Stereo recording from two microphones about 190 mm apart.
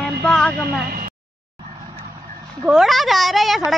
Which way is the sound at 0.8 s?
50° right (ahead or behind).